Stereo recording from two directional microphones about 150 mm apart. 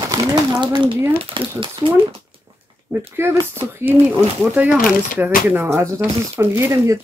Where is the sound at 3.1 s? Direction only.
15° right (ahead or behind).